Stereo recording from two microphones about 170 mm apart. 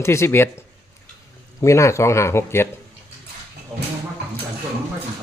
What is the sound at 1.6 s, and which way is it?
Speech, 15° left (ahead or behind).